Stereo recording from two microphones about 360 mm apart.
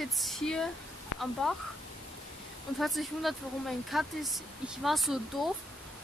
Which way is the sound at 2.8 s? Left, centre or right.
Centre.